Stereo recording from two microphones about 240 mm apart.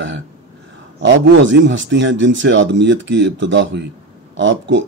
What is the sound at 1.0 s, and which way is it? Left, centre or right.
A man's voice, right.